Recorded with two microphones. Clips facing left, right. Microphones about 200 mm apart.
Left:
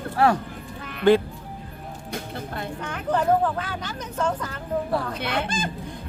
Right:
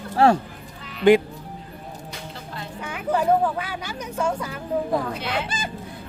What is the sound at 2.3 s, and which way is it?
Music, 55° left (ahead or behind).